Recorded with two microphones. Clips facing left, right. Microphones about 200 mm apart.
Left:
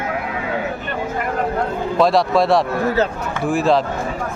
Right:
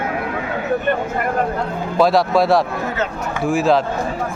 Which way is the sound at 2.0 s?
Centre (ahead or behind).